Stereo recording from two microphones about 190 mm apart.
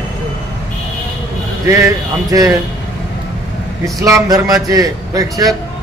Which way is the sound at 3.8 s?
15° right (ahead or behind).